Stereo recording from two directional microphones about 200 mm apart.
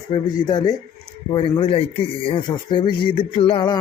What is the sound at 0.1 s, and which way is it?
Speech, 20° left (ahead or behind).